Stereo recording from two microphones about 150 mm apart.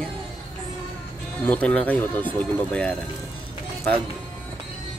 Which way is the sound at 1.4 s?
10° left (ahead or behind).